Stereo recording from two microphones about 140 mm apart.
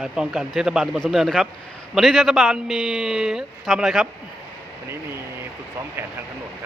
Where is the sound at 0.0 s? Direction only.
5° right (ahead or behind).